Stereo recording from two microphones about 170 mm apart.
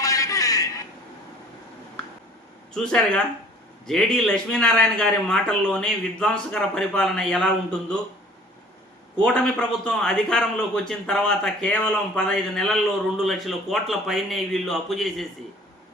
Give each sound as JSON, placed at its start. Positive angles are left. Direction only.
{"t": 0.0, "sound": "a sound", "side_deg": 20}
{"t": 2.7, "sound": "a man's voice", "side_deg": 5}
{"t": 9.2, "sound": "a man's voice", "side_deg": 5}